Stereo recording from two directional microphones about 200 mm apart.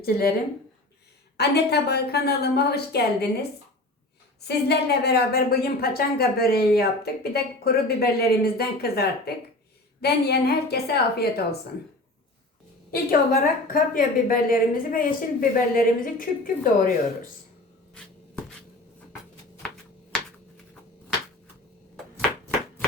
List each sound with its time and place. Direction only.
0.0 s a woman's voice: 50° left (ahead or behind)
1.4 s a woman's voice: 55° left (ahead or behind)
4.4 s a woman's voice: 55° left (ahead or behind)
12.9 s a woman's voice: 45° left (ahead or behind)